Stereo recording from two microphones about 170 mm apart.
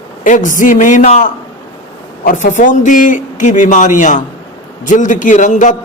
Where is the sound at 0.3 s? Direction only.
50° left (ahead or behind).